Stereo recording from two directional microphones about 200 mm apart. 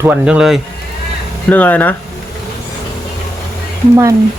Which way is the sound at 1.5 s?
10° left (ahead or behind).